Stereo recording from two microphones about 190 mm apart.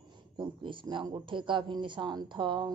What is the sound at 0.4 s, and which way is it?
A woman's voice, 25° right (ahead or behind).